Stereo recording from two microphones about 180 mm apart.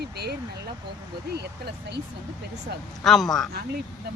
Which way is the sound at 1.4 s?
65° right (ahead or behind).